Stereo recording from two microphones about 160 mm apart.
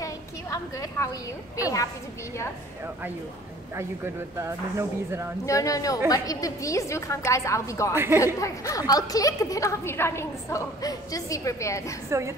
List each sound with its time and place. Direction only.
0.0 s a sound: 20° left (ahead or behind)
3.7 s speech: 15° right (ahead or behind)
5.4 s a woman's voice: 20° left (ahead or behind)
7.9 s speech: 15° right (ahead or behind)
8.4 s a woman's voice: 20° left (ahead or behind)
12.1 s speech: 15° right (ahead or behind)